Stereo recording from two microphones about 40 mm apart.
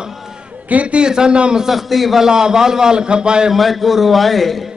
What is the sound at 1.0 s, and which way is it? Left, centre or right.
Speech, centre.